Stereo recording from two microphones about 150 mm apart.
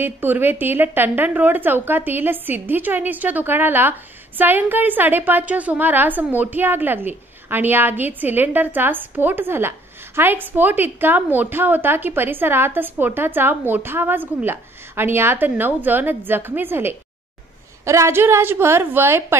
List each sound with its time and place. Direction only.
0.0 s a woman's voice: 15° right (ahead or behind)